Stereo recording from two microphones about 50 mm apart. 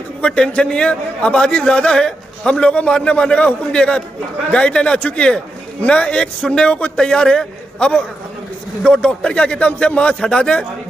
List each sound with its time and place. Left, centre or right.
0.2 s a man's voice: left